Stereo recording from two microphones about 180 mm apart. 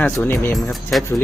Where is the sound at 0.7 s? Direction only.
Centre (ahead or behind).